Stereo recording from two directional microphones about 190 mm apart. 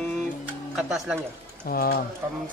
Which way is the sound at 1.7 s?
50° left (ahead or behind).